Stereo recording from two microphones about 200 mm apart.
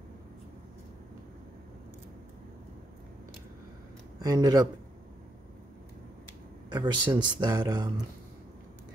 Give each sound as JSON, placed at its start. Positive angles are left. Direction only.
{"t": 4.2, "sound": "speech", "side_deg": -20}
{"t": 6.7, "sound": "speech", "side_deg": -20}